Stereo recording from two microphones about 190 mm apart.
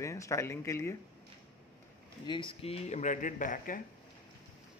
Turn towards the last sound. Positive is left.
turn(degrees=45)  # may be behind; listen again after turning